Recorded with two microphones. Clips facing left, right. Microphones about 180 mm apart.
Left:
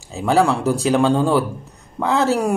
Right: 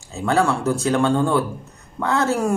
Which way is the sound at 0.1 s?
15° left (ahead or behind).